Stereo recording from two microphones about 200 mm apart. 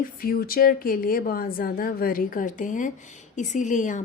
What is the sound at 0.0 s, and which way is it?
Speech, 45° left (ahead or behind).